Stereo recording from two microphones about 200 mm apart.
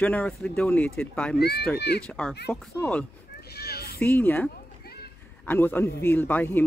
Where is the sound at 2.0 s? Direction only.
5° left (ahead or behind).